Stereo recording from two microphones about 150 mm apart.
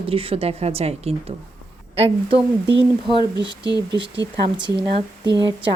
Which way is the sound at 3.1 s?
30° left (ahead or behind).